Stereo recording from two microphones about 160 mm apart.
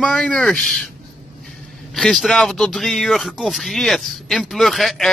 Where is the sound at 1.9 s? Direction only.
5° left (ahead or behind).